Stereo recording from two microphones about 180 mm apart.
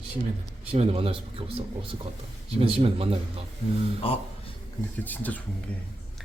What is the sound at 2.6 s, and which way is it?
Speech, 30° right (ahead or behind).